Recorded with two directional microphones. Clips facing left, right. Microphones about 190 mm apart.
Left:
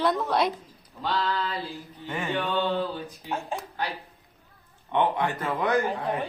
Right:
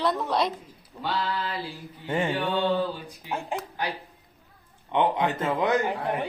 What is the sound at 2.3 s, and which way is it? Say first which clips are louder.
A man's voice: left 2 dB; 10° right (ahead or behind).